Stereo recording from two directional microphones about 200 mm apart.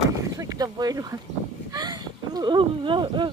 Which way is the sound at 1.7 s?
20° right (ahead or behind).